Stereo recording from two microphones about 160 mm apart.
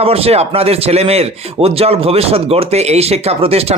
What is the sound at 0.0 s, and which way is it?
Speech, 40° right (ahead or behind).